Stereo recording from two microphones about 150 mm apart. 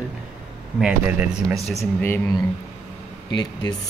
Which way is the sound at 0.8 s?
5° right (ahead or behind).